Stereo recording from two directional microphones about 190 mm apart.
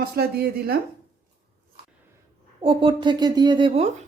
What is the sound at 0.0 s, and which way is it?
Speech, 55° right (ahead or behind).